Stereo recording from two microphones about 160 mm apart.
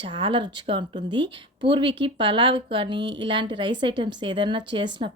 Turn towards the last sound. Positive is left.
turn(degrees=-30)  # may be behind; listen again after turning